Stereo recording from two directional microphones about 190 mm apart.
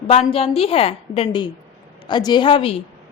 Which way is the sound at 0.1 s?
30° left (ahead or behind).